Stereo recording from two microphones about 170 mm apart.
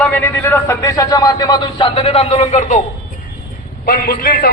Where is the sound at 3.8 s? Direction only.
65° left (ahead or behind).